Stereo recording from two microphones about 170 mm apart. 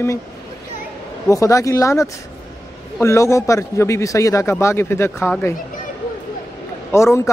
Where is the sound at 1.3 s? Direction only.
20° left (ahead or behind).